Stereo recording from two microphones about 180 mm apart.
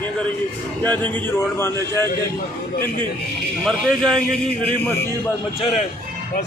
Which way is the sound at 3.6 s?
5° left (ahead or behind).